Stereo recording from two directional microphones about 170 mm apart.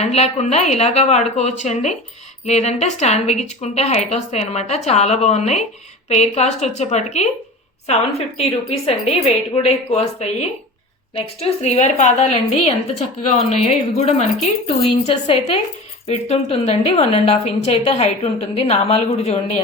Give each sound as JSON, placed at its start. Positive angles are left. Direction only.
{"t": 0.0, "sound": "a woman's voice", "side_deg": 40}